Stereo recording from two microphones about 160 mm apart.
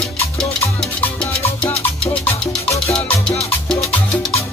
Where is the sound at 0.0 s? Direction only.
5° left (ahead or behind).